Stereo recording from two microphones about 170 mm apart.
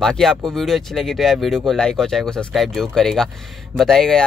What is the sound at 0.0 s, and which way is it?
Speech, 5° left (ahead or behind).